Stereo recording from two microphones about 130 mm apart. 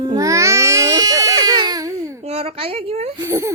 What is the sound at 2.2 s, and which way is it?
Speech, 50° right (ahead or behind).